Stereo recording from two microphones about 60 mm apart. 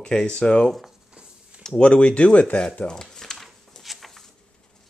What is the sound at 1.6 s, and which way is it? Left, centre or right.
Speech, centre.